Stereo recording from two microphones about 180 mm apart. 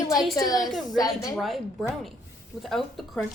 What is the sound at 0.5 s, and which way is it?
Speech, centre (ahead or behind).